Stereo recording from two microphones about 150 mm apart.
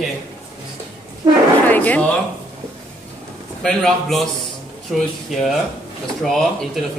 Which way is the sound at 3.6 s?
5° left (ahead or behind).